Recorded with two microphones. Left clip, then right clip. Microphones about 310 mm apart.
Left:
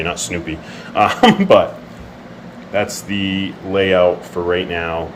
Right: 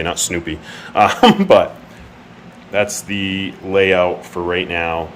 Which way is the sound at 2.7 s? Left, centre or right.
Centre.